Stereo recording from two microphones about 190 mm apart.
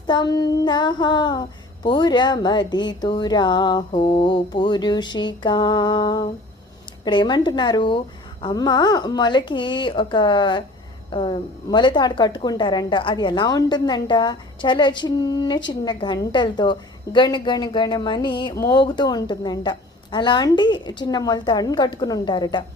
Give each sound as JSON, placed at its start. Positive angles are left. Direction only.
{"t": 0.1, "sound": "a woman's voice", "side_deg": 20}